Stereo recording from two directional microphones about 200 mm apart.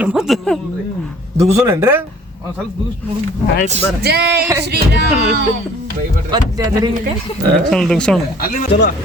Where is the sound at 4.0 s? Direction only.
55° right (ahead or behind).